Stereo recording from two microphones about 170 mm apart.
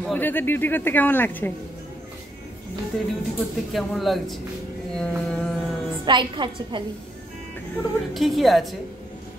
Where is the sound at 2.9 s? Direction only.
Centre (ahead or behind).